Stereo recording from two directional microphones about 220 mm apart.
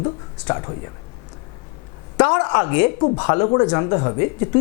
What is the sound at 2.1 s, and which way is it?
Speech, 20° left (ahead or behind).